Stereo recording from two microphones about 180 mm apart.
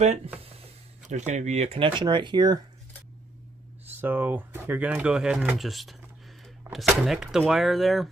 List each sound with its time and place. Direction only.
0.0 s speech: 40° right (ahead or behind); by 2.6 s 25° right (ahead or behind)
4.0 s speech: 10° right (ahead or behind)